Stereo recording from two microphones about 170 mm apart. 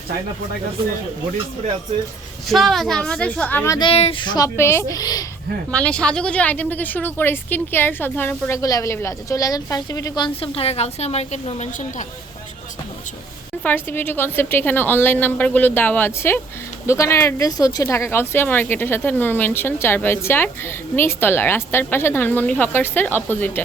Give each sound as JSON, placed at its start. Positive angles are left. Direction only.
{"t": 2.5, "sound": "a woman's voice", "side_deg": 0}
{"t": 3.8, "sound": "speech", "side_deg": 35}
{"t": 5.7, "sound": "speech", "side_deg": 5}
{"t": 13.6, "sound": "speech", "side_deg": 10}